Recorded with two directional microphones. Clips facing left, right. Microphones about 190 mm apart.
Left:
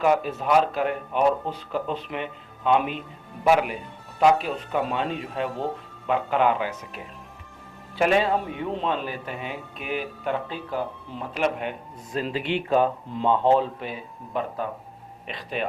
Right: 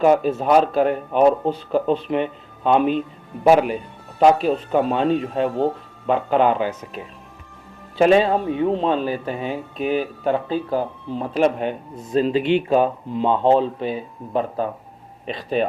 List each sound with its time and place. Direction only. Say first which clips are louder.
0.0 s speech: right 6 dB; 30° right (ahead or behind)
12.1 s speech: right 9 dB; 25° right (ahead or behind)